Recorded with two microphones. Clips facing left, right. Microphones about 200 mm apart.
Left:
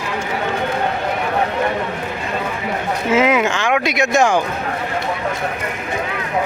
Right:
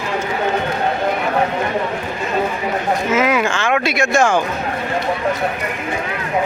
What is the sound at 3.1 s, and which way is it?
Speech, 25° left (ahead or behind).